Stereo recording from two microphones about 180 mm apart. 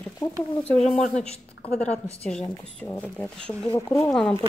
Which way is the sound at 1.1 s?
35° left (ahead or behind).